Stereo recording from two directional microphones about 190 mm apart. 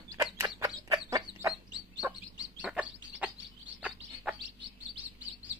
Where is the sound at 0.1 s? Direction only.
15° right (ahead or behind).